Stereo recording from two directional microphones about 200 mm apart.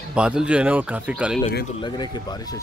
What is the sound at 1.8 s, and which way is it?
Speech, 20° left (ahead or behind).